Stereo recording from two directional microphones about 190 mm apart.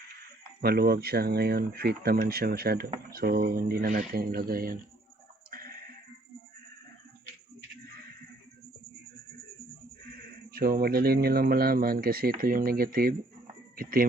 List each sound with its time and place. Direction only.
0.6 s speech: 55° right (ahead or behind)
5.5 s a sound: 50° right (ahead or behind)
10.5 s speech: 50° right (ahead or behind)